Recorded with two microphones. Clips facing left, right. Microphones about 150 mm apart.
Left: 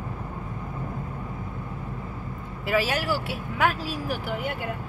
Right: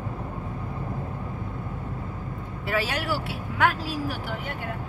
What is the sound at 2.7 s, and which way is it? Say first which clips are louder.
Speech: left 3 dB; 5° left (ahead or behind).